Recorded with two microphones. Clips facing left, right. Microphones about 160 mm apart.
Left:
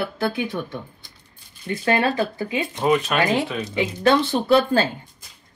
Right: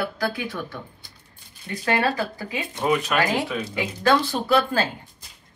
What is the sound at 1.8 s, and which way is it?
Speech, 25° left (ahead or behind).